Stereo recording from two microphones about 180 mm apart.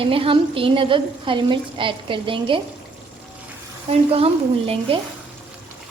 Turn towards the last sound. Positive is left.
turn(degrees=-30)  # may be behind; listen again after turning